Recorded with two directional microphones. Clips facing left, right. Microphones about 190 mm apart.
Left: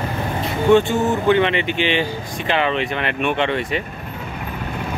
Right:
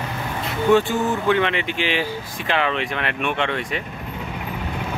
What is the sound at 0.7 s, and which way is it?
Speech, 5° right (ahead or behind).